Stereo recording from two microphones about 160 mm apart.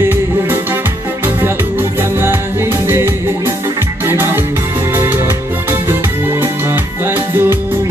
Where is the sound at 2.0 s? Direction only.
15° right (ahead or behind).